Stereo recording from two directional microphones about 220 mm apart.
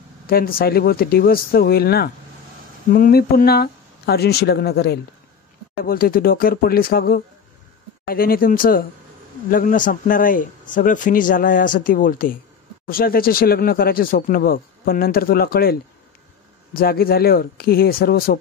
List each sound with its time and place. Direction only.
0.3 s speech: 40° left (ahead or behind)